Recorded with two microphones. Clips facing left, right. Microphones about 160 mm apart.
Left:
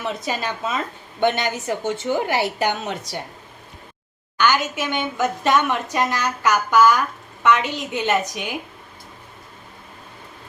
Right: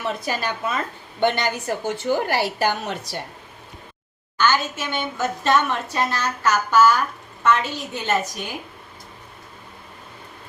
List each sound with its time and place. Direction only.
0.0 s a woman's voice: 20° left (ahead or behind)
4.4 s a sound: 15° left (ahead or behind)
4.8 s a woman's voice: 15° left (ahead or behind)